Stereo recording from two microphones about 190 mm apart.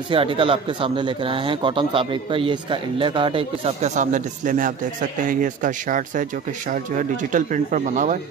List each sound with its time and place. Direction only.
0.1 s speech: 30° right (ahead or behind)